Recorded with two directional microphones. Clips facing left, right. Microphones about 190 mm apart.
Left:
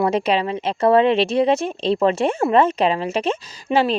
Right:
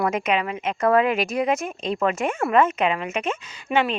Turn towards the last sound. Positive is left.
turn(degrees=35)  # may be behind; listen again after turning